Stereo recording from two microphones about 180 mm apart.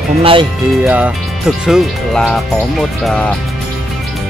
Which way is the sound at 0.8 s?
10° right (ahead or behind).